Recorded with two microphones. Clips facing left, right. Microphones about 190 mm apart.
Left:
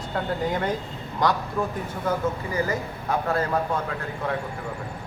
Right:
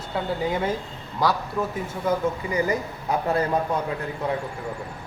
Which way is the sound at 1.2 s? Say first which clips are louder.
Even; 5° right (ahead or behind).